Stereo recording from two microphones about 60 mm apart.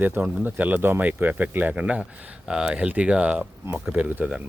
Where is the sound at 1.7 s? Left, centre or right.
Centre.